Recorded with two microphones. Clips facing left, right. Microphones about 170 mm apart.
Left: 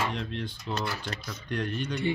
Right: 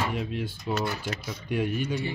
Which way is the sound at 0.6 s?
20° right (ahead or behind).